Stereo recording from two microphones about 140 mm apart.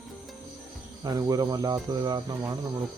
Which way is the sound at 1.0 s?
25° right (ahead or behind).